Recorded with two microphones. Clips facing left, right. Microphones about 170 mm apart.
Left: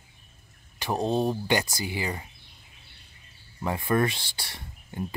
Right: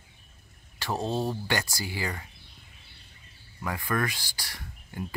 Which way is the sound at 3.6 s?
25° left (ahead or behind).